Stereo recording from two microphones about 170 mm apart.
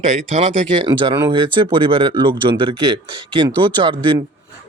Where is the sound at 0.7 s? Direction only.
30° right (ahead or behind).